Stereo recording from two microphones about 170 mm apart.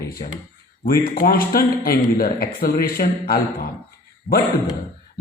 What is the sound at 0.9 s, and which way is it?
A man's voice, 60° left (ahead or behind).